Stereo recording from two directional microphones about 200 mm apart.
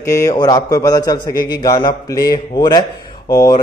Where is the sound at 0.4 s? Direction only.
20° left (ahead or behind).